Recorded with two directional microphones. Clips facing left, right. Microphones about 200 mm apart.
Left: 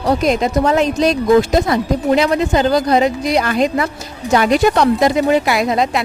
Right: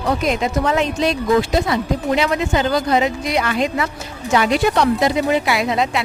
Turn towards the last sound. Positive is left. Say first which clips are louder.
# left 3 dB
turn(degrees=40)  # may be behind; listen again after turning